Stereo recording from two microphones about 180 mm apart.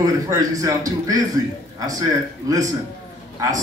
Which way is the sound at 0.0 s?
20° right (ahead or behind).